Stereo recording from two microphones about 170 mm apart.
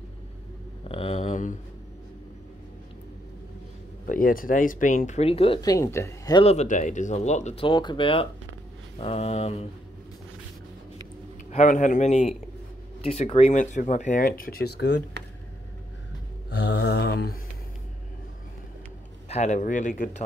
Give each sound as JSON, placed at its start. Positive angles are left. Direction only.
{"t": 0.8, "sound": "a sound", "side_deg": 35}
{"t": 4.0, "sound": "speech", "side_deg": 55}
{"t": 5.6, "sound": "speech", "side_deg": 20}
{"t": 6.4, "sound": "speech", "side_deg": 40}
{"t": 7.6, "sound": "speech", "side_deg": 25}
{"t": 8.9, "sound": "a sound", "side_deg": 35}
{"t": 11.5, "sound": "a man's voice", "side_deg": 45}
{"t": 13.0, "sound": "a sound", "side_deg": 35}
{"t": 13.6, "sound": "speech", "side_deg": 45}
{"t": 16.4, "sound": "mantra", "side_deg": 80}
{"t": 19.2, "sound": "speech", "side_deg": 40}